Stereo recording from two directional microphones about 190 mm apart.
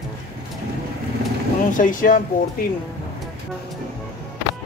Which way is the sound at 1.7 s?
45° left (ahead or behind).